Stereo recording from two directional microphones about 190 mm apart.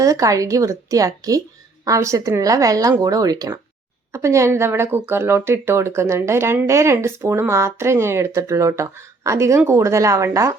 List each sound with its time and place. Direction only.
0.0 s speech: 15° right (ahead or behind)